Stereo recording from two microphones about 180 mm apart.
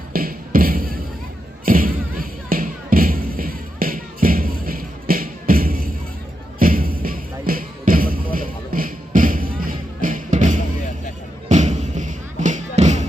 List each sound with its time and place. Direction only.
0.1 s music: 55° right (ahead or behind)